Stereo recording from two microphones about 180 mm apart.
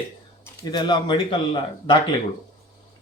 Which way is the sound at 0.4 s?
25° left (ahead or behind).